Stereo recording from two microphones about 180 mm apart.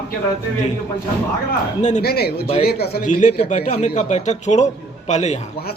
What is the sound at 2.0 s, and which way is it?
Speech, 60° left (ahead or behind).